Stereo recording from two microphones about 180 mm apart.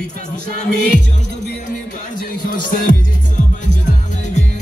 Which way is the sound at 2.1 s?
50° left (ahead or behind).